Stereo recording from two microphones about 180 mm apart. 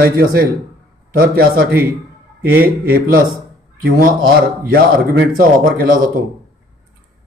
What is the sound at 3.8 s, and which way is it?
Speech, 50° right (ahead or behind).